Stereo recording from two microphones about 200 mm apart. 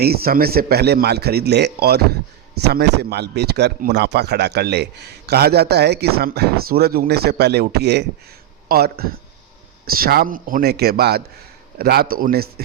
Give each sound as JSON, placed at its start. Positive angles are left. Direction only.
{"t": 0.0, "sound": "a man's voice", "side_deg": -50}